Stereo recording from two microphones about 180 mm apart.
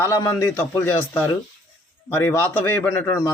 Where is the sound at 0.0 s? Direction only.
15° left (ahead or behind).